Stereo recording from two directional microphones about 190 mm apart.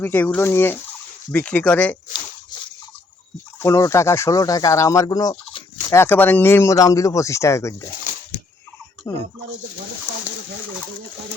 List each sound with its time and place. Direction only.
0.0 s speech: 10° left (ahead or behind)
3.6 s speech: 15° left (ahead or behind)
9.1 s speech: 15° left (ahead or behind)